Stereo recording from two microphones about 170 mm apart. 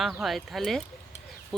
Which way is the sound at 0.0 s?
Centre (ahead or behind).